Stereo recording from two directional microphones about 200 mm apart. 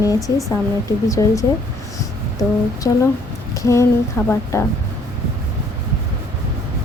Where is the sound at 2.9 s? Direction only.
20° left (ahead or behind).